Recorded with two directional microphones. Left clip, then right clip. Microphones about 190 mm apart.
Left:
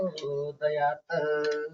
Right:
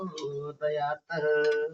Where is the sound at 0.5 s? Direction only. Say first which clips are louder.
Left 1 dB; 25° right (ahead or behind).